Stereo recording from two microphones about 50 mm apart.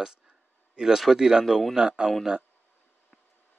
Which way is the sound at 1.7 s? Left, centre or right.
Centre.